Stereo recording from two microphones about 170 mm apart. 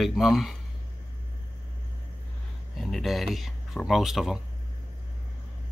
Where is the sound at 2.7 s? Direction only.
Centre (ahead or behind).